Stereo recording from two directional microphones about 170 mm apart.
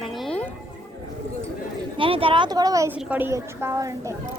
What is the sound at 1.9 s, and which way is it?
A woman's voice, 30° right (ahead or behind).